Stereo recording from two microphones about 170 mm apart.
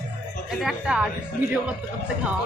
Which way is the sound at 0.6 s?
5° right (ahead or behind).